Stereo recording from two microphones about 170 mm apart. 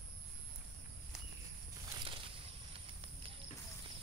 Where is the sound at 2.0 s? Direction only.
30° right (ahead or behind).